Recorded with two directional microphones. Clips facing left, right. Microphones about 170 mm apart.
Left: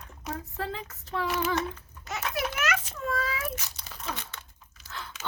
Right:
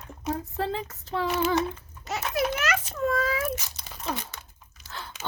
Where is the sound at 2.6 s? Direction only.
40° right (ahead or behind).